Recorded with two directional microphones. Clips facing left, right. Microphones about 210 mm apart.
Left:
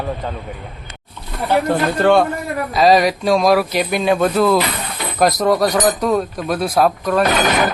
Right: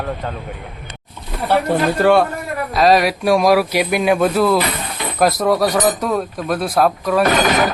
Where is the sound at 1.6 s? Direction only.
5° right (ahead or behind).